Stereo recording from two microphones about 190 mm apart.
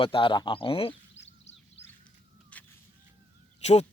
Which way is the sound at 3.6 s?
35° left (ahead or behind).